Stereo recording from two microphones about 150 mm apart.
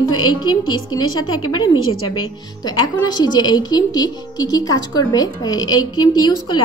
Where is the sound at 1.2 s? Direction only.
30° left (ahead or behind).